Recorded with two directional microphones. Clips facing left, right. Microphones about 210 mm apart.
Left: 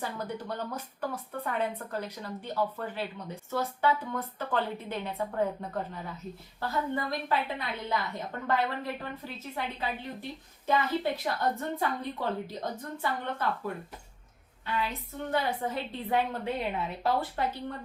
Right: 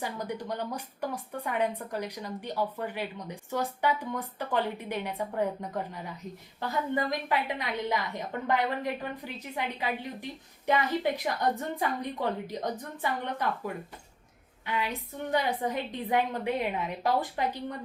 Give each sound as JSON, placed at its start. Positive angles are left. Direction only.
{"t": 0.0, "sound": "speech", "side_deg": -15}
{"t": 14.7, "sound": "speech", "side_deg": -15}